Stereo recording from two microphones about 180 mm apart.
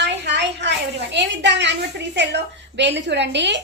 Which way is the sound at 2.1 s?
75° right (ahead or behind).